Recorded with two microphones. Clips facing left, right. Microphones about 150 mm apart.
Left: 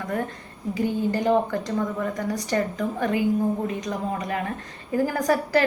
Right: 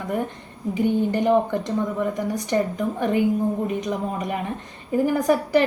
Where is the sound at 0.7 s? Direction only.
20° right (ahead or behind).